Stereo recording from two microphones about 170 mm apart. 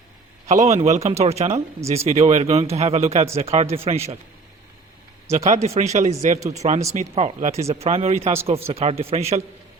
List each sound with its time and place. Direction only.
0.4 s speech: 40° right (ahead or behind)
5.3 s speech: 40° right (ahead or behind)